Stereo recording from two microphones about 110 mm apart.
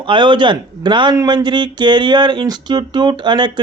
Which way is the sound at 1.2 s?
35° right (ahead or behind).